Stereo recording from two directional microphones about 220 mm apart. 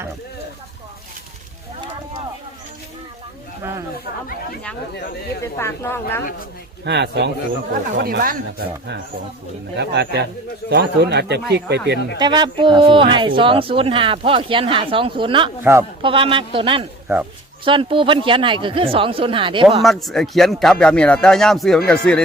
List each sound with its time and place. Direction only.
5.4 s speech: 10° left (ahead or behind)
6.8 s speech: 50° right (ahead or behind)
12.2 s speech: 20° right (ahead or behind)
19.8 s speech: centre (ahead or behind)